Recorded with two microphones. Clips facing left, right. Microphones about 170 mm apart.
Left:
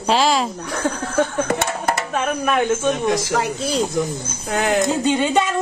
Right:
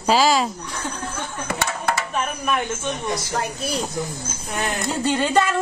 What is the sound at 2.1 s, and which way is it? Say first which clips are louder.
Speech: left 4 dB; 90° left.